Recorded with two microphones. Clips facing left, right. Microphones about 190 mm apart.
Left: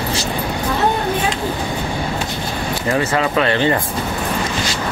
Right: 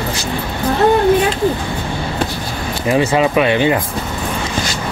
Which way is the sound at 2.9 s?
15° right (ahead or behind).